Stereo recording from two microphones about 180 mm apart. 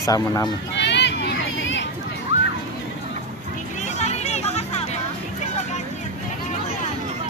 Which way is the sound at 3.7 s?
40° left (ahead or behind).